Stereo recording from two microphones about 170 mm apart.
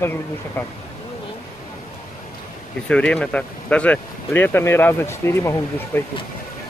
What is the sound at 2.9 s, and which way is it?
Speech, 5° left (ahead or behind).